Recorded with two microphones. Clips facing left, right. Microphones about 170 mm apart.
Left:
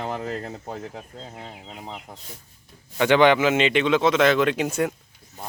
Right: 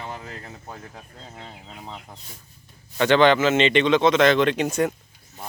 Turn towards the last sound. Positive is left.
turn(degrees=5)  # may be behind; listen again after turning